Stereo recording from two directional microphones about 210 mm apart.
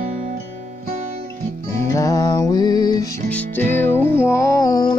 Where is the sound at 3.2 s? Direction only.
5° left (ahead or behind).